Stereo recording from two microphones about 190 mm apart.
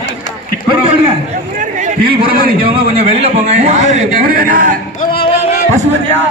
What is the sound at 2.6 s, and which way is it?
A man's voice, 35° right (ahead or behind).